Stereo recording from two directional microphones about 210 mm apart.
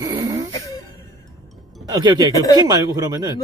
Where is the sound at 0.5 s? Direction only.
15° left (ahead or behind).